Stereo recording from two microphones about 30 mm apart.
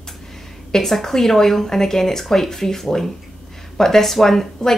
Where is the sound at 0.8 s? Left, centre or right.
Centre.